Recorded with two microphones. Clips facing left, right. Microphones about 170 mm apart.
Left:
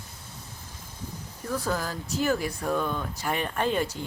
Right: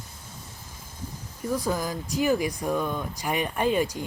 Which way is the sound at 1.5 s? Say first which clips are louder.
Right 2 dB; 15° right (ahead or behind).